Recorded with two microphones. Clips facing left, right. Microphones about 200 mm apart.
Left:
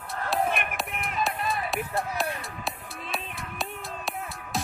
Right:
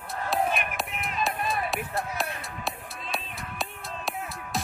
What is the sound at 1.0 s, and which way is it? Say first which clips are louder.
Music: even; centre (ahead or behind).